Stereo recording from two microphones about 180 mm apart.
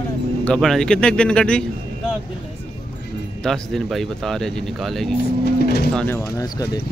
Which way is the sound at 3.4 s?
Centre (ahead or behind).